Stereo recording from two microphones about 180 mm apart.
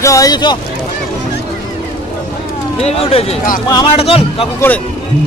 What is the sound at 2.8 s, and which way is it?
Speech, 35° left (ahead or behind).